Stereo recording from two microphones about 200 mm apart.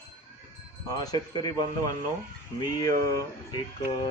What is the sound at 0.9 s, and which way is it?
Speech, 20° left (ahead or behind).